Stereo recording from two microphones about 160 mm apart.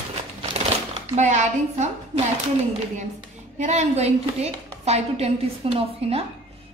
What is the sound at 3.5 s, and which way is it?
A woman's voice, 45° right (ahead or behind).